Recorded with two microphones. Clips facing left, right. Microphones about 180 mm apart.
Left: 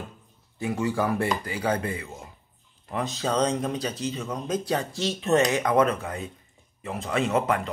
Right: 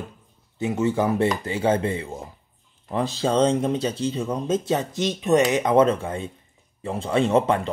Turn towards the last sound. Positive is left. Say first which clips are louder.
# right 5 dB
turn(degrees=-30)  # may be behind; listen again after turning